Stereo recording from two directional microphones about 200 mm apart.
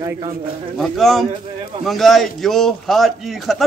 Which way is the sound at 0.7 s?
Centre (ahead or behind).